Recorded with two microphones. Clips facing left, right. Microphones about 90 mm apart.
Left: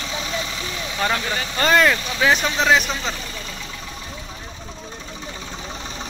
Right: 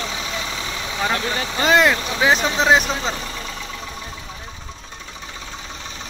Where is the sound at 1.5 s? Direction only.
15° right (ahead or behind).